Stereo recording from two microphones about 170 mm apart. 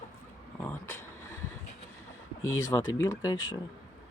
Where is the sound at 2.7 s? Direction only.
20° left (ahead or behind).